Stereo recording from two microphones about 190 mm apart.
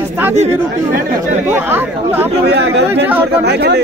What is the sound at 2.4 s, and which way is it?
Speech, 60° right (ahead or behind).